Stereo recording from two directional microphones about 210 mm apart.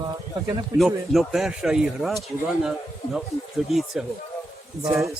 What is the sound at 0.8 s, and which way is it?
Speech, centre (ahead or behind).